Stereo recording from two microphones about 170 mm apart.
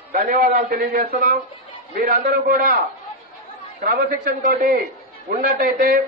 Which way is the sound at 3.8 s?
60° right (ahead or behind).